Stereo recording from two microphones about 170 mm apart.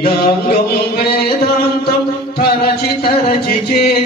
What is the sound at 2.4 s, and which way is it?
Music, 65° left (ahead or behind).